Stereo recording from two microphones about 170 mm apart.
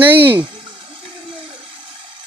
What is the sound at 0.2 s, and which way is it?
Speech, 30° right (ahead or behind).